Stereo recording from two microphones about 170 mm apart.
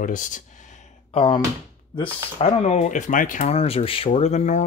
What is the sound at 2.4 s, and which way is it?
Speech, 40° left (ahead or behind).